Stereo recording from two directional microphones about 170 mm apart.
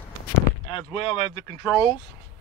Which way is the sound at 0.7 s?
35° left (ahead or behind).